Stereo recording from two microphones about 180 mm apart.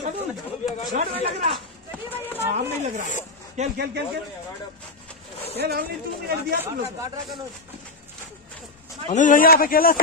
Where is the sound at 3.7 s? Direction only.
65° right (ahead or behind).